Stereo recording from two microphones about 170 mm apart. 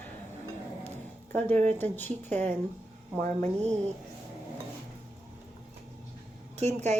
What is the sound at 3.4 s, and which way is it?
Speech, 40° right (ahead or behind).